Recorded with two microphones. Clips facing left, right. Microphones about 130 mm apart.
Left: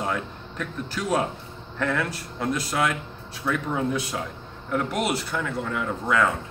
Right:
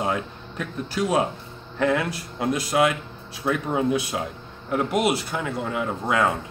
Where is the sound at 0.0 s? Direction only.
15° right (ahead or behind).